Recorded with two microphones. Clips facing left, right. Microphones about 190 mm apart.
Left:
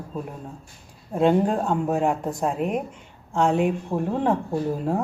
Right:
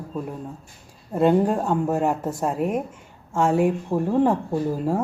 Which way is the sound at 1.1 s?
5° right (ahead or behind).